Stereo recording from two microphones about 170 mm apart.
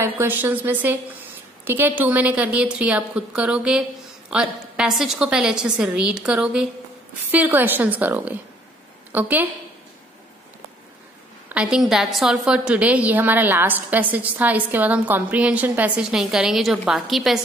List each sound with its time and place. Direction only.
0.0 s a woman's voice: 10° right (ahead or behind)
11.4 s a woman's voice: 5° right (ahead or behind)